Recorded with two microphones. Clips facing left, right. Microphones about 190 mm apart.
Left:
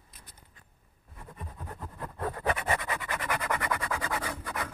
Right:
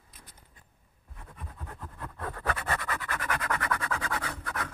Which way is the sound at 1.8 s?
15° left (ahead or behind).